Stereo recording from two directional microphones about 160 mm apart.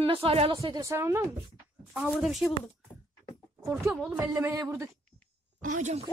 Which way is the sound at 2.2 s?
Centre (ahead or behind).